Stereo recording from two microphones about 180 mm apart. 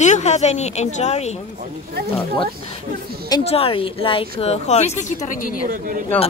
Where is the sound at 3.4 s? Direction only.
35° left (ahead or behind).